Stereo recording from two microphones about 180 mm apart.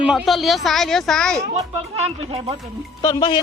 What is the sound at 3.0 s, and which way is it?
Speech, 25° left (ahead or behind).